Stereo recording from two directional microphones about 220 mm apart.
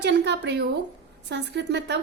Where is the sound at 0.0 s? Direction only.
50° right (ahead or behind).